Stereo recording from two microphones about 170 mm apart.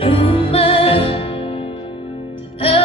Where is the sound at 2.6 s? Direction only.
35° left (ahead or behind).